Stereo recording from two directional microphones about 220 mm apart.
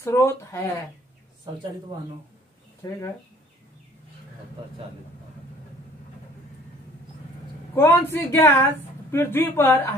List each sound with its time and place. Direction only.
0.0 s speech: 10° left (ahead or behind)
2.8 s speech: 15° left (ahead or behind)
7.7 s speech: 10° left (ahead or behind)